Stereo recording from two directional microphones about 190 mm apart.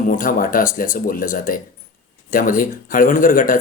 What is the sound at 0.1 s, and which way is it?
Speech, 45° left (ahead or behind).